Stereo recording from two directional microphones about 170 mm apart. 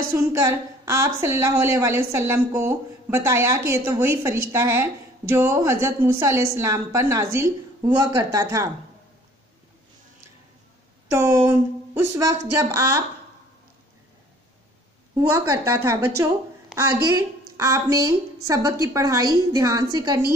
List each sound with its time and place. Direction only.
0.3 s a woman's voice: 15° right (ahead or behind)
11.1 s a woman's voice: 15° right (ahead or behind)
15.1 s a woman's voice: 20° right (ahead or behind)
17.1 s a woman's voice: 15° right (ahead or behind)